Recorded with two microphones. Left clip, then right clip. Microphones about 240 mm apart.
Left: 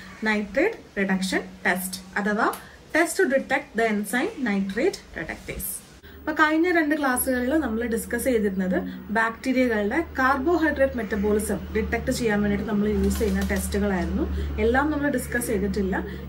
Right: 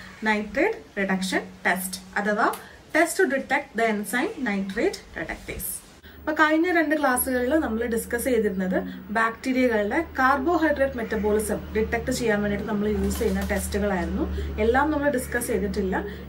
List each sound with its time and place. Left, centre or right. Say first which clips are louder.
0.2 s a woman's voice: even; centre